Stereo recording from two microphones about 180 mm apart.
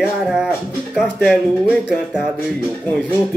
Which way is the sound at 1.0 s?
Centre (ahead or behind).